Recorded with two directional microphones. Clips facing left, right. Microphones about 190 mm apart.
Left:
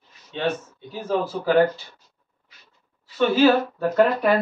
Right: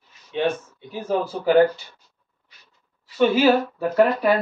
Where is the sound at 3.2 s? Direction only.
10° right (ahead or behind).